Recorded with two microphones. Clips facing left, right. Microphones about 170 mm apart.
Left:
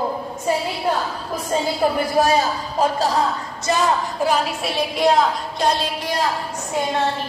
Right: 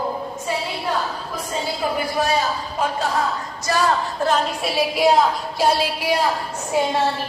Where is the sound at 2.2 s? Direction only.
45° left (ahead or behind).